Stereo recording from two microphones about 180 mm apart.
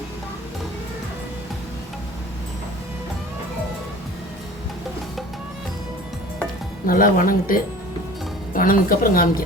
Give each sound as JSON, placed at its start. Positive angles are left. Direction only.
{"t": 6.8, "sound": "a woman's voice", "side_deg": 50}